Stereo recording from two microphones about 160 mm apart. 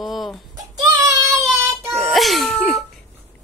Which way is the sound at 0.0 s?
Centre (ahead or behind).